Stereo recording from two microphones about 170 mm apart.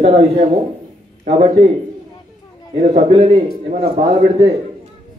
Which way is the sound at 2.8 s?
40° right (ahead or behind).